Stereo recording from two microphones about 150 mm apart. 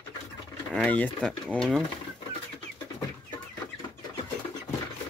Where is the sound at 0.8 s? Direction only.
10° left (ahead or behind).